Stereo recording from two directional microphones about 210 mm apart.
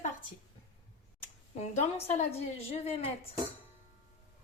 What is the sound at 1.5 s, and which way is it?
A woman's voice, 35° left (ahead or behind).